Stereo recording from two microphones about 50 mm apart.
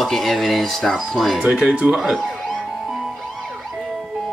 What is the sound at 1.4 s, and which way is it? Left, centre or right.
Speech, centre.